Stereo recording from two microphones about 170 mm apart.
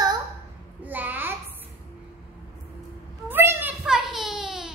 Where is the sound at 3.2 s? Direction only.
10° right (ahead or behind).